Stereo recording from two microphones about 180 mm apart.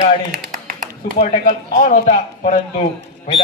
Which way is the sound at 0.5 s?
50° right (ahead or behind).